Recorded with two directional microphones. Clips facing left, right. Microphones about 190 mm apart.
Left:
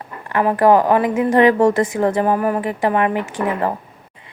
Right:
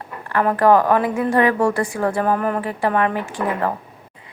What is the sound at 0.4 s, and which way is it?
A woman's voice, 15° left (ahead or behind).